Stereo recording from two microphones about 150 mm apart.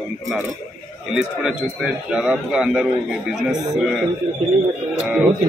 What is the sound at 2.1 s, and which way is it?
Speech, 5° right (ahead or behind).